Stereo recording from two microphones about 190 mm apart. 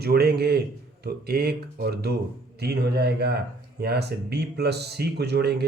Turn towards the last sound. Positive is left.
turn(degrees=-60)  # may be behind; listen again after turning